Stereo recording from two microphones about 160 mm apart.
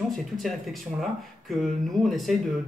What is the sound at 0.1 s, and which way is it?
Speech, centre (ahead or behind).